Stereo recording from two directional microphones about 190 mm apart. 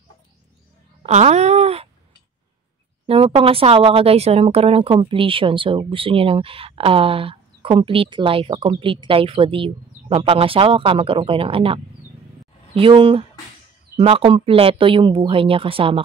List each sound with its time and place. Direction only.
1.0 s speech: 35° right (ahead or behind)
3.1 s speech: 30° right (ahead or behind)